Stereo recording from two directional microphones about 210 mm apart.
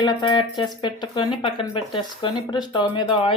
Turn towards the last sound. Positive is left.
turn(degrees=25)  # may be behind; listen again after turning